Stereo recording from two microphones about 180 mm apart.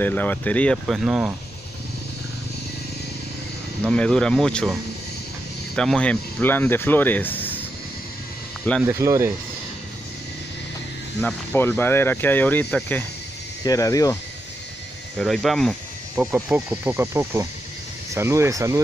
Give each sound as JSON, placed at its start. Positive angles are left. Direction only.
{"t": 0.0, "sound": "speech", "side_deg": 10}
{"t": 3.8, "sound": "speech", "side_deg": 5}
{"t": 5.8, "sound": "speech", "side_deg": 5}
{"t": 8.8, "sound": "speech", "side_deg": -15}
{"t": 11.1, "sound": "speech", "side_deg": 10}
{"t": 15.1, "sound": "speech", "side_deg": 0}